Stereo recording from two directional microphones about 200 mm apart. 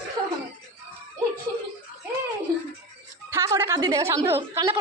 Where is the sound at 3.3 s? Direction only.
15° right (ahead or behind).